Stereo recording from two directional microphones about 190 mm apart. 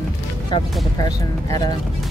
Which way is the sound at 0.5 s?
25° left (ahead or behind).